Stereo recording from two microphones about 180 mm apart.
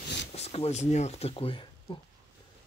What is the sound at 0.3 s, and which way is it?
Speech, 35° left (ahead or behind).